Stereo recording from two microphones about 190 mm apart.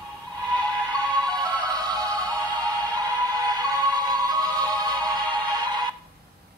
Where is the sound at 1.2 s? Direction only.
20° right (ahead or behind).